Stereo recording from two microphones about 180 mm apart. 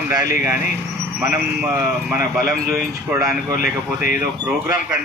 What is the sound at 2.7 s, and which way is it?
Speech, 15° right (ahead or behind).